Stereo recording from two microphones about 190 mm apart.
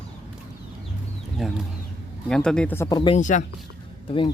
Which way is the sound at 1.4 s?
Centre (ahead or behind).